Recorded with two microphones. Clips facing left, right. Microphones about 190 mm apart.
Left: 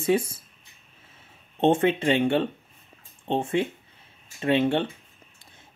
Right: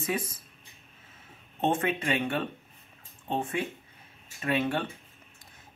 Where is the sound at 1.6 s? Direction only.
30° left (ahead or behind).